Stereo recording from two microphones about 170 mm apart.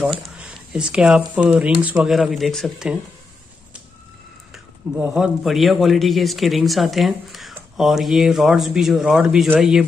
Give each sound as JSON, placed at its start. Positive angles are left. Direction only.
{"t": 0.4, "sound": "a man's voice", "side_deg": -5}
{"t": 4.9, "sound": "a man's voice", "side_deg": -5}